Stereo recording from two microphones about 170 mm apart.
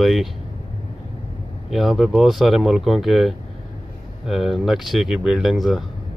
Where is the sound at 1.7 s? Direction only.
Centre (ahead or behind).